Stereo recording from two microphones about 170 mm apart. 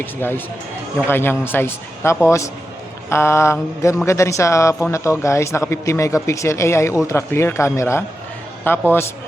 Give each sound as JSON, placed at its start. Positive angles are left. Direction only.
{"t": 0.0, "sound": "speech", "side_deg": 10}